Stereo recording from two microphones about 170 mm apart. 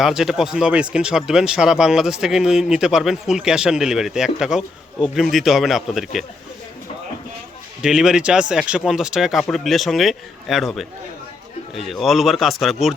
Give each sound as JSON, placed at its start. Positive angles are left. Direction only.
{"t": 0.0, "sound": "speech", "side_deg": 0}
{"t": 7.8, "sound": "speech", "side_deg": -5}